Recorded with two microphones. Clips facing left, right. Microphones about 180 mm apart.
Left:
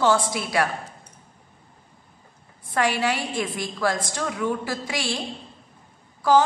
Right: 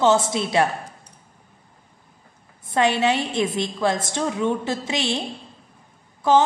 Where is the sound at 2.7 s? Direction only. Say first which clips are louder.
Right 4 dB; 20° right (ahead or behind).